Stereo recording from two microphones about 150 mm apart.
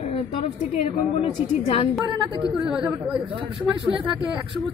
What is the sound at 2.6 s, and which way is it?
Speech, 5° right (ahead or behind).